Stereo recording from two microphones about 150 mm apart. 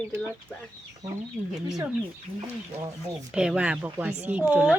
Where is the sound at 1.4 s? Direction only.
15° right (ahead or behind).